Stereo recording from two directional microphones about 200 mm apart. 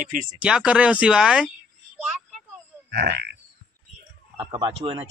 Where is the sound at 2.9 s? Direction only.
55° right (ahead or behind).